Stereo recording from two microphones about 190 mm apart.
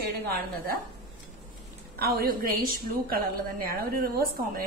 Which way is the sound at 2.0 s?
55° right (ahead or behind).